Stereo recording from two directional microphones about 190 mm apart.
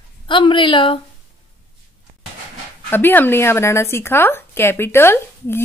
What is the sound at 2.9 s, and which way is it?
A woman's voice, 10° left (ahead or behind).